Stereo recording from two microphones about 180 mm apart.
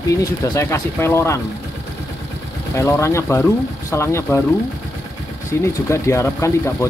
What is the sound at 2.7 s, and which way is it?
Speech, 15° left (ahead or behind).